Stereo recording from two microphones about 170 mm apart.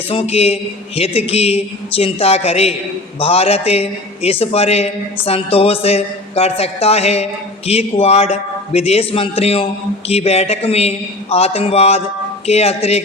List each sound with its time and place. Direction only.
0.1 s a man's voice: 35° left (ahead or behind)